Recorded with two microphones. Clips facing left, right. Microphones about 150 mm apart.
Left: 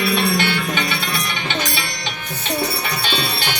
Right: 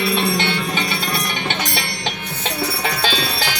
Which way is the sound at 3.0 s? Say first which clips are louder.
Right 2 dB; 90° right.